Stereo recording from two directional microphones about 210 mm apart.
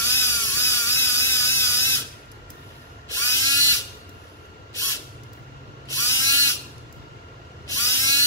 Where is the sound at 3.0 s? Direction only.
15° left (ahead or behind).